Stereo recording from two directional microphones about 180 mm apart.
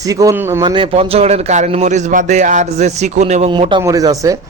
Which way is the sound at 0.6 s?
25° right (ahead or behind).